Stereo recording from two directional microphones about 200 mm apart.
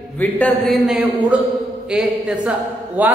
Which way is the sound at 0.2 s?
5° left (ahead or behind).